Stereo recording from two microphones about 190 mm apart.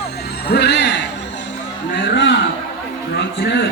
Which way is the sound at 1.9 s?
65° left (ahead or behind).